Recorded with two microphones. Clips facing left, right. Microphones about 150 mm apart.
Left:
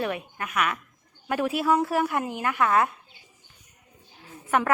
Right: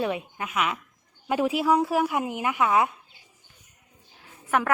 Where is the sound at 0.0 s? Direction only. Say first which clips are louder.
Right 2 dB; 15° right (ahead or behind).